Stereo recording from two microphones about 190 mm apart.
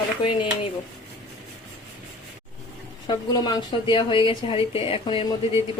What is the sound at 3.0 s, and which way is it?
A woman's voice, 20° left (ahead or behind).